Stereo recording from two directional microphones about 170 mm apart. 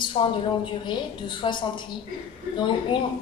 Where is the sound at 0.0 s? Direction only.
30° left (ahead or behind).